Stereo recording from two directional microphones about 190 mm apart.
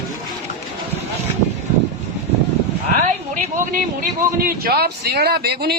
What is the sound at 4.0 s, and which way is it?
A man's voice, 50° right (ahead or behind).